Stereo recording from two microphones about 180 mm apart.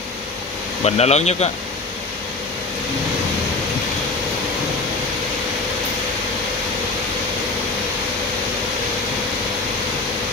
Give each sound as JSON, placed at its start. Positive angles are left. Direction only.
{"t": 0.8, "sound": "speech", "side_deg": 35}